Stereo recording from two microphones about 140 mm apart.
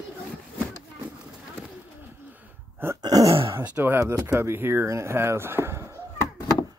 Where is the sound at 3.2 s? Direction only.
40° right (ahead or behind).